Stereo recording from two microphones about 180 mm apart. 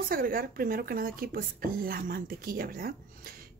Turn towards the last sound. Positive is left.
turn(degrees=-55)  # may be behind; listen again after turning